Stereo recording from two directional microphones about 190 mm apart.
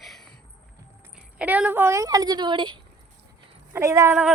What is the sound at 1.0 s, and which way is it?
A woman's voice, 5° right (ahead or behind).